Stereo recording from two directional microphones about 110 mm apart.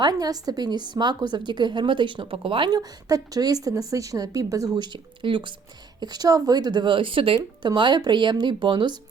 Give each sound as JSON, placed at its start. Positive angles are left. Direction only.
{"t": 0.0, "sound": "a woman's voice", "side_deg": -35}
{"t": 2.6, "sound": "a woman's voice", "side_deg": -35}
{"t": 6.0, "sound": "a woman's voice", "side_deg": -35}